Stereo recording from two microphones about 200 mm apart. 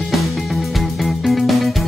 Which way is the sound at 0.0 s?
Centre (ahead or behind).